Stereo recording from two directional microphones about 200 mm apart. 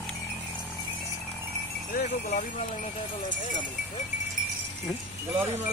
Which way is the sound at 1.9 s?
40° left (ahead or behind).